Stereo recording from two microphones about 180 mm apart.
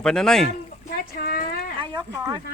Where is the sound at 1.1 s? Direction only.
55° left (ahead or behind).